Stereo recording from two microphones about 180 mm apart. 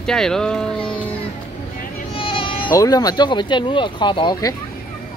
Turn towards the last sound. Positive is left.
turn(degrees=25)  # may be behind; listen again after turning